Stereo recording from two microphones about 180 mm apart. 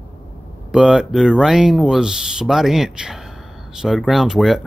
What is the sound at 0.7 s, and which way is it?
Speech, 5° right (ahead or behind).